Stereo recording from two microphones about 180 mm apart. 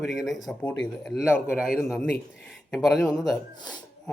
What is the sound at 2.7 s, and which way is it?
Speech, centre (ahead or behind).